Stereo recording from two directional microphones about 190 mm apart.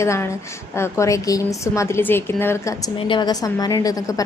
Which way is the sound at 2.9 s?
25° left (ahead or behind).